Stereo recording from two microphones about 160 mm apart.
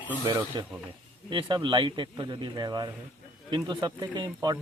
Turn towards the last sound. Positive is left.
turn(degrees=-25)  # may be behind; listen again after turning